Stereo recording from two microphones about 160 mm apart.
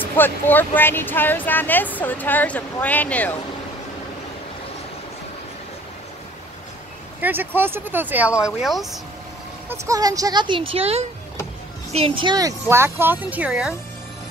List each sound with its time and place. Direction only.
0.0 s speech: 10° left (ahead or behind)
7.2 s speech: 10° right (ahead or behind)
9.7 s speech: 20° right (ahead or behind); by 13.7 s 5° right (ahead or behind)